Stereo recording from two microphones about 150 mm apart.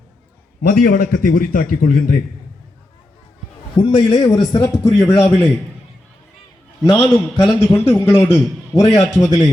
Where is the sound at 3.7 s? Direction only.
35° left (ahead or behind).